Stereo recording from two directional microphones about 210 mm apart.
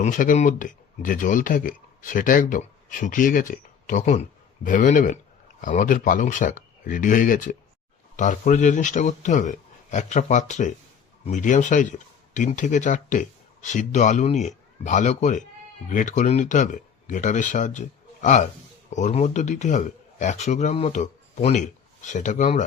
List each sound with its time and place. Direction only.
0.0 s a man's voice: 40° left (ahead or behind)